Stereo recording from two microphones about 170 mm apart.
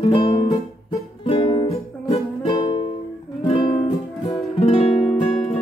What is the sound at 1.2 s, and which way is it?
Music, 35° left (ahead or behind).